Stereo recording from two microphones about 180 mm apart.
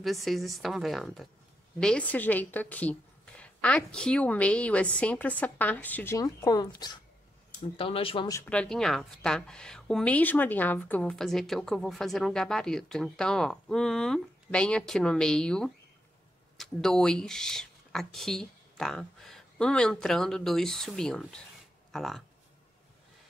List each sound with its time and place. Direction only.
0.0 s a woman's voice: centre (ahead or behind); by 8.3 s 30° left (ahead or behind)
8.3 s a woman's voice: 10° left (ahead or behind)